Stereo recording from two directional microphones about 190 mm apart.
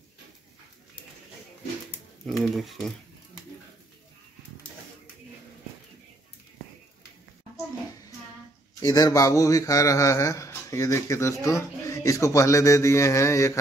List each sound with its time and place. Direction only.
2.2 s speech: centre (ahead or behind)
8.7 s a man's voice: 20° left (ahead or behind)